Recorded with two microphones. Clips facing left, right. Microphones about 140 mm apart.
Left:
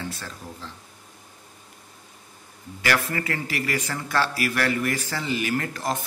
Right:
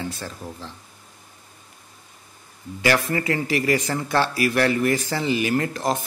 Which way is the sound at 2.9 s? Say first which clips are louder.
Right 4 dB; 20° right (ahead or behind).